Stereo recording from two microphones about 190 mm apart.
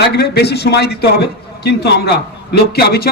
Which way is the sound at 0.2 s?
60° left (ahead or behind).